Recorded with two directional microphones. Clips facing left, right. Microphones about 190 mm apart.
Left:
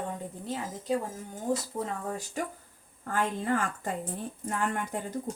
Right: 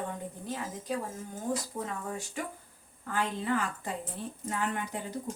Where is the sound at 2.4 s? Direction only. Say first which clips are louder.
Left 3 dB; 40° left (ahead or behind).